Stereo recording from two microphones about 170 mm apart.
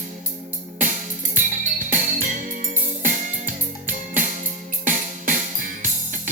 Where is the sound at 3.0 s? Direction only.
50° right (ahead or behind).